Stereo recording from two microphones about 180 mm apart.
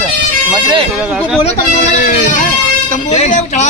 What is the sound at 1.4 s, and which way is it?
Speech, 45° left (ahead or behind).